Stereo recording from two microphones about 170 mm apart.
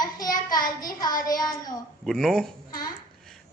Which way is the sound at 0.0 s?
20° left (ahead or behind).